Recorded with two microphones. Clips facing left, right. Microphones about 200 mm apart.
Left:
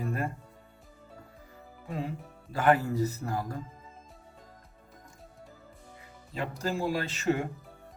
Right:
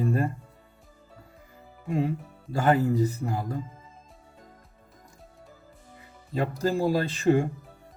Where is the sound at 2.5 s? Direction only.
25° right (ahead or behind).